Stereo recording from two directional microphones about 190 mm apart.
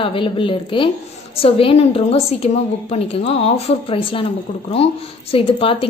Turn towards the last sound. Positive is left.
turn(degrees=30)  # may be behind; listen again after turning